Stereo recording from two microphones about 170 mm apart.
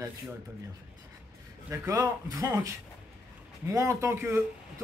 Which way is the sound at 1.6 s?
15° right (ahead or behind).